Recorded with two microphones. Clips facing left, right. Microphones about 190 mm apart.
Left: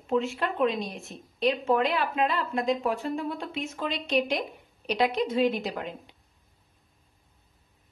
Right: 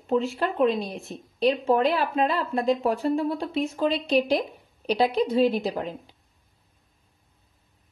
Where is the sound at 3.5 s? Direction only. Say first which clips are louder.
Right 7 dB; 35° right (ahead or behind).